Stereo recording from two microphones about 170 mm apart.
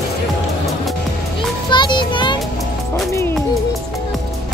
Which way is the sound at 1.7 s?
25° left (ahead or behind).